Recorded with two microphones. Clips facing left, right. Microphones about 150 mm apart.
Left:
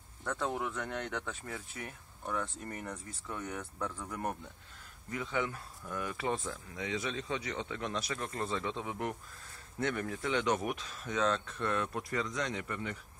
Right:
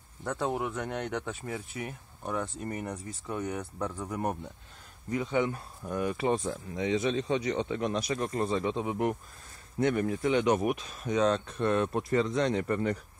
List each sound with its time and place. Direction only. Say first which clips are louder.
0.2 s speech: right 4 dB; 20° right (ahead or behind); by 13.0 s 40° right (ahead or behind)